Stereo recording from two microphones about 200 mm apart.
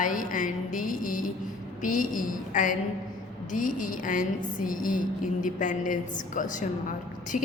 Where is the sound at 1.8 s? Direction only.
40° left (ahead or behind).